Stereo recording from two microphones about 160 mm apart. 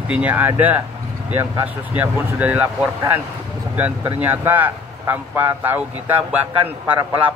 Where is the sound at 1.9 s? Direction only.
10° right (ahead or behind).